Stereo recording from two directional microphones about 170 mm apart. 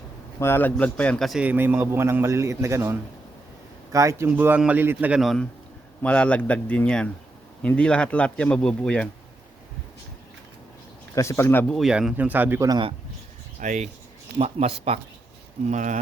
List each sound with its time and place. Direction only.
0.3 s a man's voice: 15° left (ahead or behind)
11.1 s speech: 15° left (ahead or behind)
11.7 s a man's voice: centre (ahead or behind)
12.6 s a man's voice: 25° right (ahead or behind)
13.6 s speech: 45° right (ahead or behind)
15.7 s speech: 45° right (ahead or behind)